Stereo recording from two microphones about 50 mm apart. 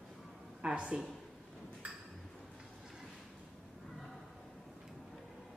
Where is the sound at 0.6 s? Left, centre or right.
Right.